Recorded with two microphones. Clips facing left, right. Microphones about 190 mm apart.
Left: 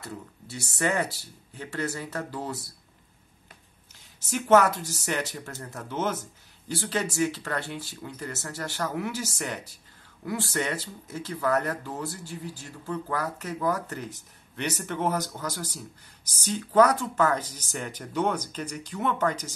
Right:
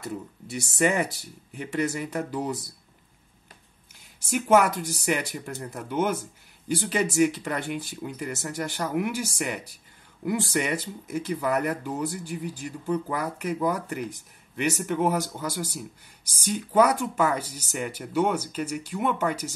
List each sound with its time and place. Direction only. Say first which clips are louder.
0.0 s speech: right 5 dB; 15° right (ahead or behind)
4.2 s speech: even; 10° right (ahead or behind)